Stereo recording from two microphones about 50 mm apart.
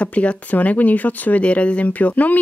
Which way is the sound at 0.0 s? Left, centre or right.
Left.